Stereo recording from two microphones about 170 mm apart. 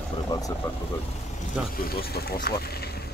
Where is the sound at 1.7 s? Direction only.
60° left (ahead or behind).